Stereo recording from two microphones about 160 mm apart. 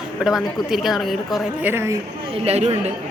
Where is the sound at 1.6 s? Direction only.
15° right (ahead or behind).